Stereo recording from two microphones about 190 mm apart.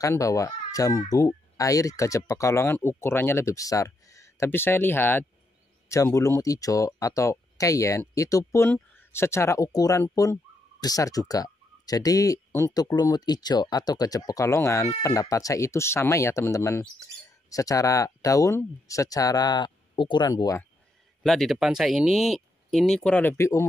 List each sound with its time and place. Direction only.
0.0 s speech: 15° left (ahead or behind)
21.2 s speech: centre (ahead or behind)